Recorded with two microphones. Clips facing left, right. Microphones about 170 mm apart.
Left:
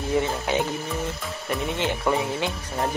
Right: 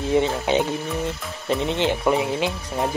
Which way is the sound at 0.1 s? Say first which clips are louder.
Right 4 dB; 20° right (ahead or behind).